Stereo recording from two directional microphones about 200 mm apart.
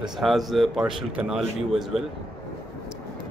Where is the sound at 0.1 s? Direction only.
Centre (ahead or behind).